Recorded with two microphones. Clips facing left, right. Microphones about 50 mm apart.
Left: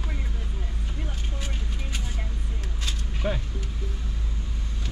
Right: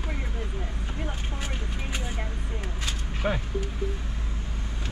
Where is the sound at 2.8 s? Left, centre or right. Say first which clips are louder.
Right 1 dB; centre.